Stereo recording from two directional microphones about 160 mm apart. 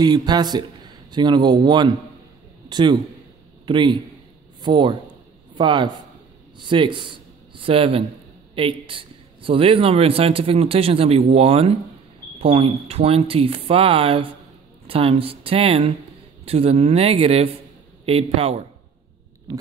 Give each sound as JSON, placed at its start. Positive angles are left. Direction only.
{"t": 0.0, "sound": "a man's voice", "side_deg": -25}